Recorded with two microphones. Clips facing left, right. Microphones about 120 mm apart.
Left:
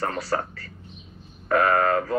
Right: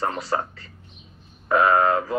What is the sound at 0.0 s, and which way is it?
A man's voice, 25° right (ahead or behind).